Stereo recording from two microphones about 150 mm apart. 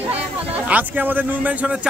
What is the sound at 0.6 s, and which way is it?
Speech, 10° right (ahead or behind).